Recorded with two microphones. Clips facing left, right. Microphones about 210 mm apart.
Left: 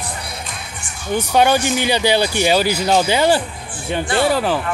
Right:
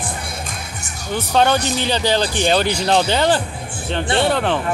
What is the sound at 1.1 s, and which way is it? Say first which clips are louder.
A woman's voice: left 2 dB; 10° left (ahead or behind).